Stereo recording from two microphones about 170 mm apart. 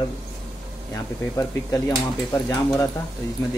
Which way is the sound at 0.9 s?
20° left (ahead or behind).